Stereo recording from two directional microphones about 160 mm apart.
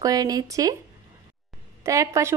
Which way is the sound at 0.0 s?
20° right (ahead or behind).